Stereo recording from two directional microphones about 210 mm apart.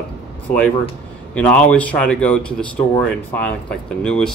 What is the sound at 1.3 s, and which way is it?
Speech, 5° left (ahead or behind).